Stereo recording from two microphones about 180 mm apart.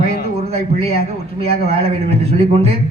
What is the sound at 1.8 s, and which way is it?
A man's voice, 35° right (ahead or behind).